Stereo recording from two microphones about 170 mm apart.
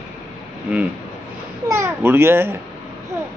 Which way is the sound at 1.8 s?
15° right (ahead or behind).